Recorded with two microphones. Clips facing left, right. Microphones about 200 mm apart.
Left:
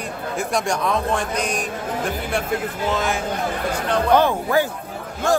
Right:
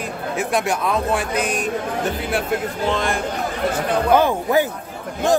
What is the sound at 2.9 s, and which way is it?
A man's voice, 5° left (ahead or behind).